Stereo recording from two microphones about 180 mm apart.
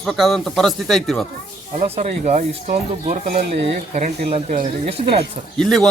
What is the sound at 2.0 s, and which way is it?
Speech, 40° right (ahead or behind).